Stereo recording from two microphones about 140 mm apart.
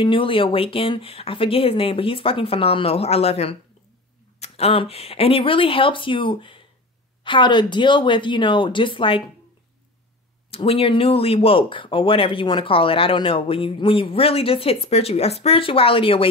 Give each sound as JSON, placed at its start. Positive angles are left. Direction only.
{"t": 0.0, "sound": "speech", "side_deg": 40}
{"t": 10.5, "sound": "speech", "side_deg": 45}